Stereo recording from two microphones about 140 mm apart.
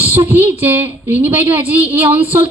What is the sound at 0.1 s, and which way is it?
A woman's voice, 15° right (ahead or behind).